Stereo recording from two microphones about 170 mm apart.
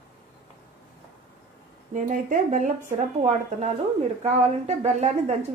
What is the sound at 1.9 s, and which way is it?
A woman's voice, 50° right (ahead or behind).